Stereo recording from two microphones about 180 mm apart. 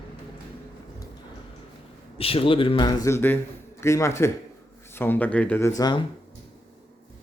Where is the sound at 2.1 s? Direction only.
30° left (ahead or behind).